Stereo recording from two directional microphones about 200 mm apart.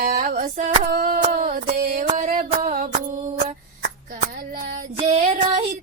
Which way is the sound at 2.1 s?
35° right (ahead or behind).